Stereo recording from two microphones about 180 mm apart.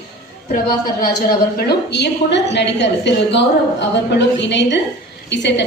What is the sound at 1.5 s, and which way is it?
A woman's voice, 65° left (ahead or behind).